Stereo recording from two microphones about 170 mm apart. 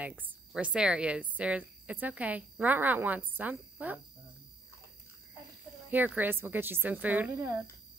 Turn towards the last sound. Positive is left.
turn(degrees=-20)  # may be behind; listen again after turning